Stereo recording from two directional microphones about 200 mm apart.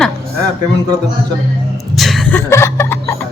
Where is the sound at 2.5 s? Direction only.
15° left (ahead or behind).